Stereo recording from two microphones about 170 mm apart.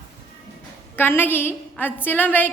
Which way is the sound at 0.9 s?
10° left (ahead or behind).